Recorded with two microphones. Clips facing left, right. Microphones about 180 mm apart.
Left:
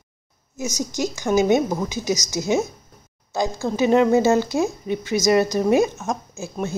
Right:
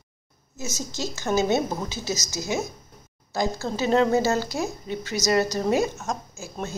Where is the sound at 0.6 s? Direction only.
15° left (ahead or behind).